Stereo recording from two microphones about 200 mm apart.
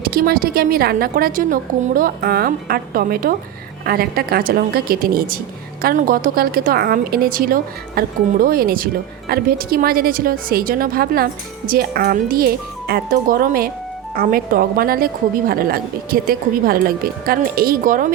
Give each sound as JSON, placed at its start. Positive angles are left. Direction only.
{"t": 0.0, "sound": "a woman's voice", "side_deg": -50}